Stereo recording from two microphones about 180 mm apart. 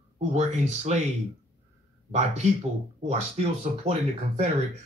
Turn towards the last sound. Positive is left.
turn(degrees=-35)  # may be behind; listen again after turning